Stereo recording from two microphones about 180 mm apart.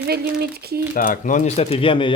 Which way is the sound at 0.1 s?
60° right (ahead or behind).